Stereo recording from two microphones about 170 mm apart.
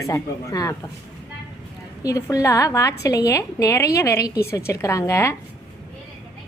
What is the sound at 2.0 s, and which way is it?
A woman's voice, 20° left (ahead or behind).